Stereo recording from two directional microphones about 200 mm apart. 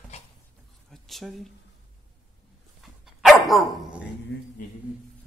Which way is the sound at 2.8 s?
Centre (ahead or behind).